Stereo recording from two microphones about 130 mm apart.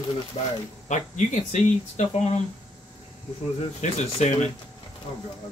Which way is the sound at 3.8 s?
65° left (ahead or behind).